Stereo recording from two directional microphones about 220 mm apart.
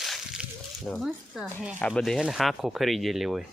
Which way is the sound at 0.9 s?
Centre (ahead or behind).